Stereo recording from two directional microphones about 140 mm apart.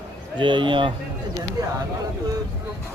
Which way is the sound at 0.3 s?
35° right (ahead or behind).